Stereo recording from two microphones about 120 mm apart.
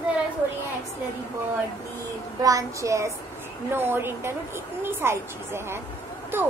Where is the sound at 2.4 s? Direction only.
30° right (ahead or behind).